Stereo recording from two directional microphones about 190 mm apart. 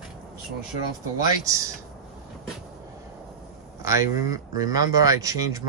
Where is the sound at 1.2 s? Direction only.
15° right (ahead or behind).